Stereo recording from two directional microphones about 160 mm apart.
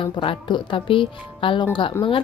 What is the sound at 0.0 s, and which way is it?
A woman's voice, 35° left (ahead or behind).